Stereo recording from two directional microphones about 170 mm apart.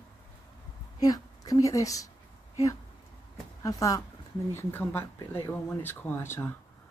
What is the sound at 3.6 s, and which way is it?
Speech, 20° left (ahead or behind).